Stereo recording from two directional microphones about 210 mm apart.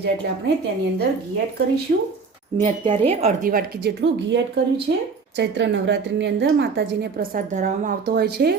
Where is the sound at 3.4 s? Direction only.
45° right (ahead or behind).